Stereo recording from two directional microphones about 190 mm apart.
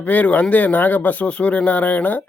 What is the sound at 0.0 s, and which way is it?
Speech, 10° left (ahead or behind).